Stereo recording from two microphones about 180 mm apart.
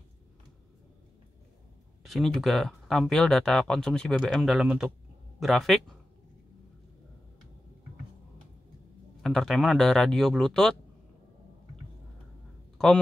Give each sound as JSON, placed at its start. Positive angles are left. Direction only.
{"t": 2.0, "sound": "speech", "side_deg": 0}
{"t": 9.2, "sound": "speech", "side_deg": 0}
{"t": 12.7, "sound": "a sound", "side_deg": 5}